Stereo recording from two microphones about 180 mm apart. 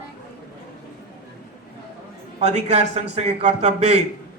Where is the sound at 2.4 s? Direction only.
35° right (ahead or behind).